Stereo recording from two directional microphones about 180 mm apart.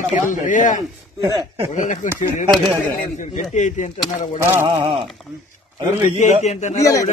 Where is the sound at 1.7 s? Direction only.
45° left (ahead or behind).